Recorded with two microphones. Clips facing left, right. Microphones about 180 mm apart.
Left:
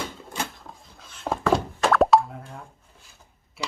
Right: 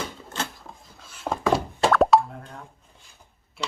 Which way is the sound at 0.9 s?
5° right (ahead or behind).